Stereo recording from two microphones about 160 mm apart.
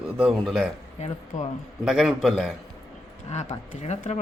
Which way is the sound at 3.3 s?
45° left (ahead or behind).